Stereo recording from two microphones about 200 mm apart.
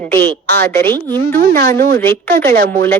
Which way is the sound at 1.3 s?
50° right (ahead or behind).